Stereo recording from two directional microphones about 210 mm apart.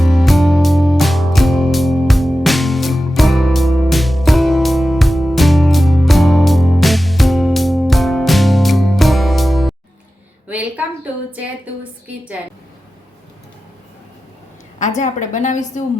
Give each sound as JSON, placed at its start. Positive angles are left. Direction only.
{"t": 0.0, "sound": "music", "side_deg": 0}
{"t": 11.3, "sound": "a sound", "side_deg": -5}
{"t": 14.8, "sound": "a woman's voice", "side_deg": 35}